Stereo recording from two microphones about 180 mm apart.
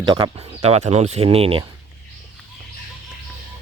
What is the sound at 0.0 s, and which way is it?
Speech, 25° right (ahead or behind).